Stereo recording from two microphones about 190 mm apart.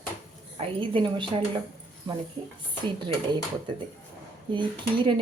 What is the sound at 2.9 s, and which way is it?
Speech, 25° right (ahead or behind).